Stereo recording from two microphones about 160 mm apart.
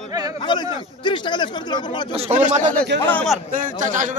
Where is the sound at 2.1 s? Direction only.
45° right (ahead or behind).